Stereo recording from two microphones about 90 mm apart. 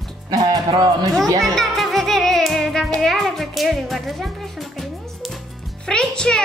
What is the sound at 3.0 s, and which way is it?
Speech, centre (ahead or behind).